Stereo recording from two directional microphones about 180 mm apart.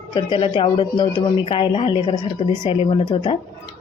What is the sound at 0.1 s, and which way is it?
Speech, 25° left (ahead or behind).